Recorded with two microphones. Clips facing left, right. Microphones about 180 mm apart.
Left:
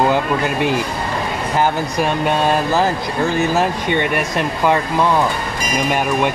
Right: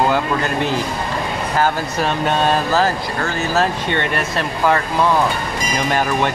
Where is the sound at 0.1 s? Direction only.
15° left (ahead or behind).